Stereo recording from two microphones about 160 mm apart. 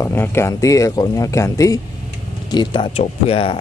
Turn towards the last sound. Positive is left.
turn(degrees=35)  # may be behind; listen again after turning